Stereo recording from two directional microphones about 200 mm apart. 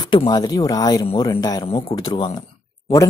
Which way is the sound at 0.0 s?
20° left (ahead or behind).